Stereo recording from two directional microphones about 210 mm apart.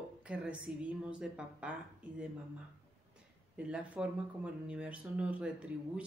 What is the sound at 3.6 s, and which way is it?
A woman's voice, 5° right (ahead or behind).